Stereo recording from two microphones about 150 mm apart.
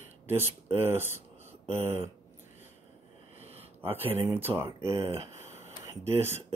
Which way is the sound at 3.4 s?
45° right (ahead or behind).